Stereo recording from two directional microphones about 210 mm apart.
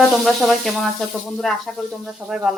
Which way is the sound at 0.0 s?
Centre (ahead or behind).